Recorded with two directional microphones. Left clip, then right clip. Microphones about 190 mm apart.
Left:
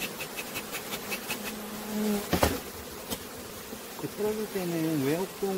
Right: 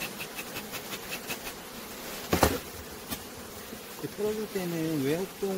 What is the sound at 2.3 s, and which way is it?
Bee, 40° right (ahead or behind).